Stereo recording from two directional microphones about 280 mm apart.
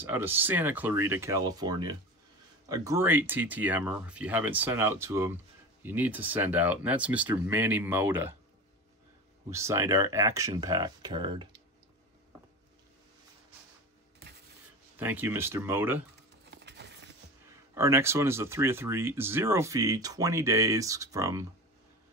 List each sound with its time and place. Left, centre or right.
0.0 s speech: centre
9.5 s speech: centre
15.0 s speech: centre
16.4 s a sound: right
17.7 s speech: centre